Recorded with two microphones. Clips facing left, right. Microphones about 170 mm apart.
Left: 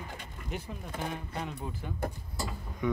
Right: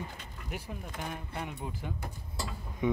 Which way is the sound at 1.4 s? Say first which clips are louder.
Right 1 dB; 15° right (ahead or behind).